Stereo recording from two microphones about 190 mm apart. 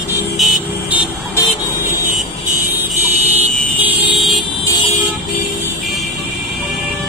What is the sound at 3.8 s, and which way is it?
Vehicle, 5° right (ahead or behind).